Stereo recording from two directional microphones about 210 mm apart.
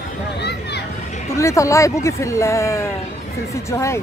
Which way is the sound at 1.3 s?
15° left (ahead or behind).